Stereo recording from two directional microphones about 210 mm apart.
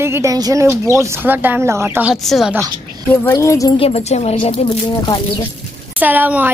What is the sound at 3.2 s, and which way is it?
Speech, 15° left (ahead or behind).